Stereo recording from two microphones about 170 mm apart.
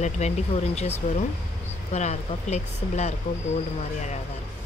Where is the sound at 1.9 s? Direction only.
40° left (ahead or behind).